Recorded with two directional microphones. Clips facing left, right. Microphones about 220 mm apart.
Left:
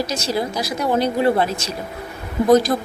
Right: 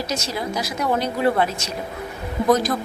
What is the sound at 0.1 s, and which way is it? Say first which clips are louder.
Speech: left 3 dB; 35° left (ahead or behind).